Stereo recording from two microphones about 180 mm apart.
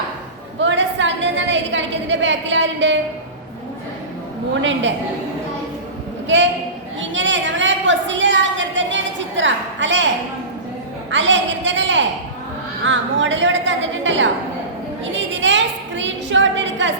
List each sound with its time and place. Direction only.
0.6 s a sound: 90° right
6.2 s a man's voice: 90° right
11.1 s a woman's voice: 90° right